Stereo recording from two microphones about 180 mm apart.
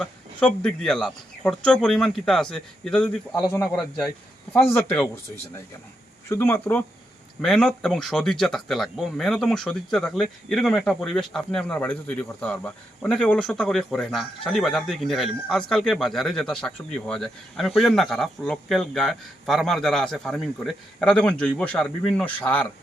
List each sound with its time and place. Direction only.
0.0 s speech: 5° left (ahead or behind)
6.2 s speech: 15° left (ahead or behind)